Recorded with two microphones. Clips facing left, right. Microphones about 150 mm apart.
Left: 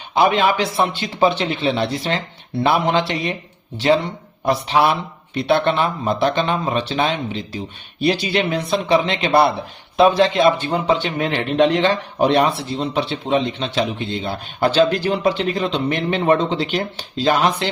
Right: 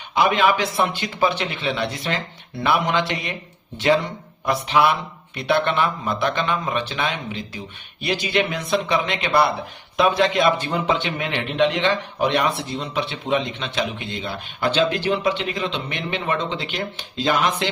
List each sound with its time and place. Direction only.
0.1 s speech: 30° left (ahead or behind)